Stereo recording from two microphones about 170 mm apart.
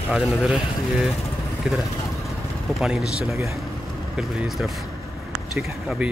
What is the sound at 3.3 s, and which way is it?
Speech, 15° right (ahead or behind).